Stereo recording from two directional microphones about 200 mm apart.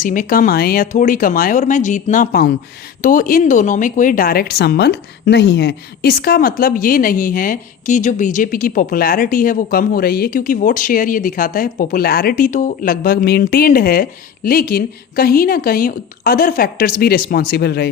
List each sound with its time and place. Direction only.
0.0 s a woman's voice: 40° left (ahead or behind)